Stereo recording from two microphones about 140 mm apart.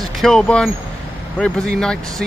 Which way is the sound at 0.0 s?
Centre (ahead or behind).